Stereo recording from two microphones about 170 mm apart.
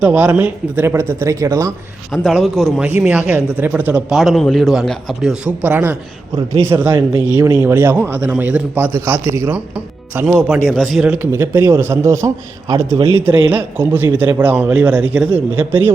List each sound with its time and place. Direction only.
0.0 s speech: 10° right (ahead or behind)
2.1 s a man's voice: centre (ahead or behind); by 9.6 s 15° right (ahead or behind)
10.2 s a man's voice: 5° right (ahead or behind)
11.3 s speech: 15° right (ahead or behind)